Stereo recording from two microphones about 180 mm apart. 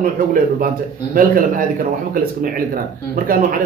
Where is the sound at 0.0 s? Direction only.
50° right (ahead or behind).